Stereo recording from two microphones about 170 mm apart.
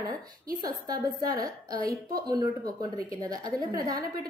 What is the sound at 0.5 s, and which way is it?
A woman's voice, 25° right (ahead or behind).